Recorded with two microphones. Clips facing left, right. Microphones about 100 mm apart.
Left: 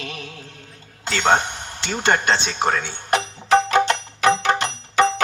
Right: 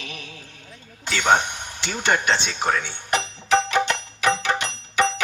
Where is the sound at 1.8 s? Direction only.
45° left (ahead or behind).